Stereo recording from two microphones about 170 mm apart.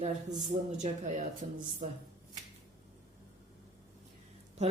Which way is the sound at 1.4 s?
45° right (ahead or behind).